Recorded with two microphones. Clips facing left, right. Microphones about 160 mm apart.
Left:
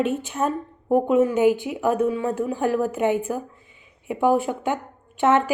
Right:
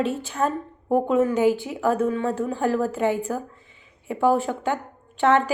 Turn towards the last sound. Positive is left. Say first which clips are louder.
# even
turn(degrees=15)  # may be behind; listen again after turning